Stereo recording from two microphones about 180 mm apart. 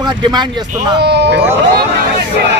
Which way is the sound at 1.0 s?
70° right (ahead or behind).